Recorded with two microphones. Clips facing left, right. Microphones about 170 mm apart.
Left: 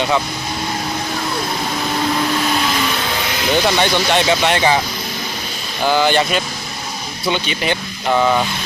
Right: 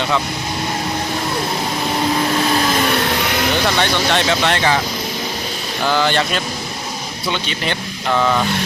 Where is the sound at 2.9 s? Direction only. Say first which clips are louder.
Right 3 dB; 65° right (ahead or behind).